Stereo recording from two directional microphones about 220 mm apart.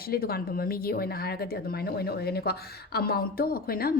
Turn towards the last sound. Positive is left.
turn(degrees=45)  # may be behind; listen again after turning